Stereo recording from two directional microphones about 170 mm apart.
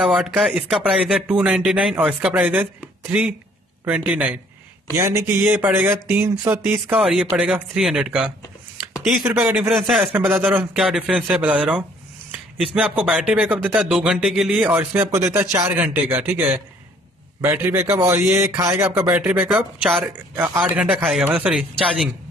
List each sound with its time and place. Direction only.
0.1 s a man's voice: centre (ahead or behind)